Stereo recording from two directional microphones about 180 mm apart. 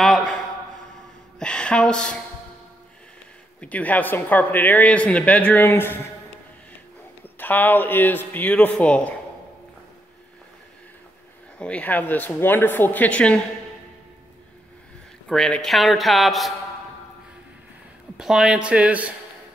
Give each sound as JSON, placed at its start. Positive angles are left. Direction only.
{"t": 0.0, "sound": "a sound", "side_deg": 0}
{"t": 1.4, "sound": "a sound", "side_deg": 5}
{"t": 3.6, "sound": "speech", "side_deg": 10}
{"t": 7.3, "sound": "speech", "side_deg": 10}
{"t": 11.5, "sound": "speech", "side_deg": 5}
{"t": 15.2, "sound": "speech", "side_deg": 5}
{"t": 18.1, "sound": "speech", "side_deg": -5}